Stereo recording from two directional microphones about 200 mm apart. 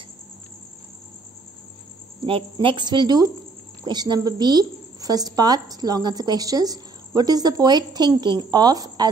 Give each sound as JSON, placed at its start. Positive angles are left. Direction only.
{"t": 2.2, "sound": "a woman's voice", "side_deg": -25}